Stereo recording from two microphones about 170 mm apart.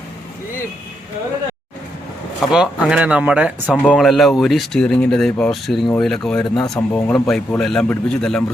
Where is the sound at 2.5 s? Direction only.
5° right (ahead or behind).